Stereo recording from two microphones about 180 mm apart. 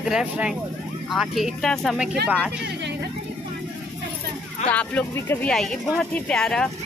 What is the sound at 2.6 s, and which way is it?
Speech, 70° right (ahead or behind).